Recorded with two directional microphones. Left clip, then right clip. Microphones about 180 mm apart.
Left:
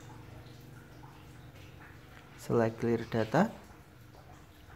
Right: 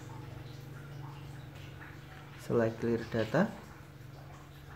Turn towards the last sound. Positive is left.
turn(degrees=20)  # may be behind; listen again after turning